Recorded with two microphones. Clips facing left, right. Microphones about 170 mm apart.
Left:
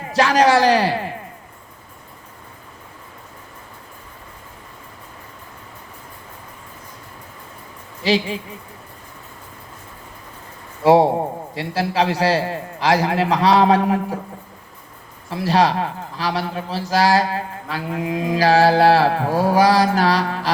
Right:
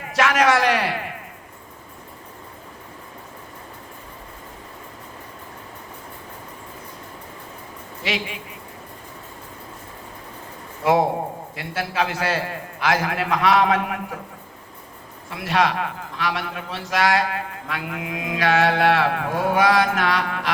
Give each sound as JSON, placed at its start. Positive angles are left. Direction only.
{"t": 0.0, "sound": "a man's voice", "side_deg": 30}
{"t": 8.0, "sound": "a man's voice", "side_deg": 30}
{"t": 10.8, "sound": "a man's voice", "side_deg": 30}
{"t": 15.3, "sound": "a man's voice", "side_deg": 30}